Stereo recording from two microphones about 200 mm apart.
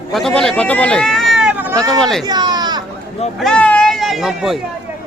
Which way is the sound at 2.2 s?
20° right (ahead or behind).